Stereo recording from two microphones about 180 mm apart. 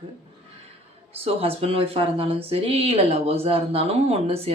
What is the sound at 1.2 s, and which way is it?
Speech, 35° right (ahead or behind).